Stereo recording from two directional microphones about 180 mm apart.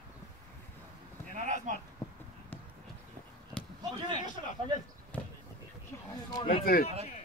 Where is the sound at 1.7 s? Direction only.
40° right (ahead or behind).